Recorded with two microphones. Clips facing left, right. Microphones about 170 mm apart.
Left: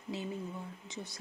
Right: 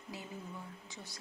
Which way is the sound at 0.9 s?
20° left (ahead or behind).